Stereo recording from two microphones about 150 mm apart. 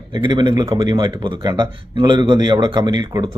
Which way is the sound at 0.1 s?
30° right (ahead or behind).